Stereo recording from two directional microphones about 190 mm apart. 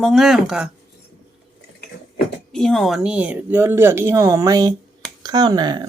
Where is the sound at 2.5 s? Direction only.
5° left (ahead or behind).